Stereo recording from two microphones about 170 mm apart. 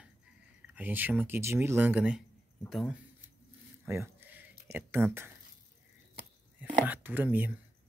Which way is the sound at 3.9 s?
15° right (ahead or behind).